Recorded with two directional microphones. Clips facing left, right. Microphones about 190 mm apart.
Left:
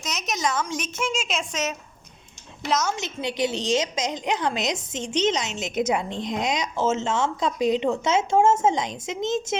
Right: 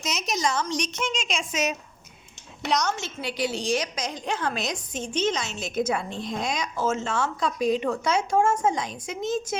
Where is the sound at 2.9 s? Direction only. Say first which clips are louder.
Left 3 dB; 20° left (ahead or behind).